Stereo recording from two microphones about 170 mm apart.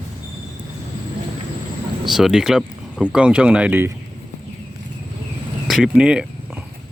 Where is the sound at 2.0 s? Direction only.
Centre (ahead or behind).